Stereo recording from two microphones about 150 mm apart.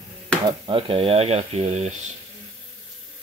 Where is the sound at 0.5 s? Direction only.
35° right (ahead or behind).